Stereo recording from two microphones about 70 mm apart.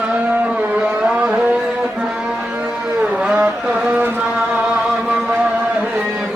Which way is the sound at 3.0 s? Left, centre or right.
Centre.